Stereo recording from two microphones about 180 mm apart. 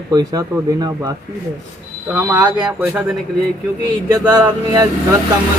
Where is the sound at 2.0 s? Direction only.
10° right (ahead or behind).